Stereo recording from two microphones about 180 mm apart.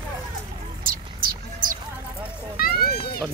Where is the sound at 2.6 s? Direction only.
55° left (ahead or behind).